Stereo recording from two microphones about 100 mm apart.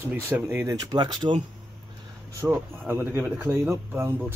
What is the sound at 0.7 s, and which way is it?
Speech, 45° right (ahead or behind).